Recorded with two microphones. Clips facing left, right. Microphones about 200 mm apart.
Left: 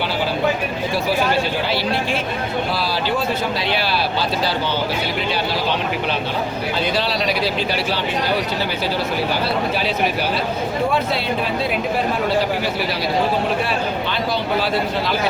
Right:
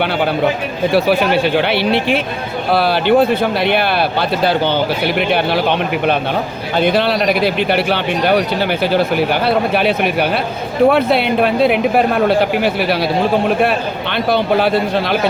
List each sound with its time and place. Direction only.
0.9 s a man's voice: 65° right (ahead or behind)